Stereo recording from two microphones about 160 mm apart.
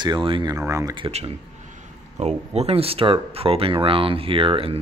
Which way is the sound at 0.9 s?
35° right (ahead or behind).